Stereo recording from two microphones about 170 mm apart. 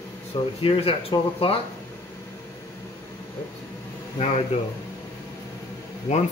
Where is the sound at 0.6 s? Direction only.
35° left (ahead or behind).